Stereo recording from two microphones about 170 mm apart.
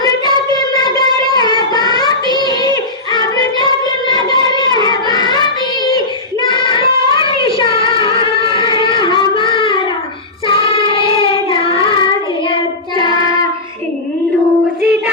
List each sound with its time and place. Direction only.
1.7 s child singing: 25° left (ahead or behind)
14.8 s music: centre (ahead or behind)